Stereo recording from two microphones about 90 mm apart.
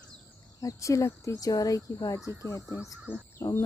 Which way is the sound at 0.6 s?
35° left (ahead or behind).